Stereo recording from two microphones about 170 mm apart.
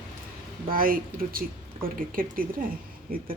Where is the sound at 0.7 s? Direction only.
55° right (ahead or behind).